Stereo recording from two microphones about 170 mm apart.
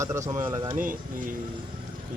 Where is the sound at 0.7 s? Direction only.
55° right (ahead or behind).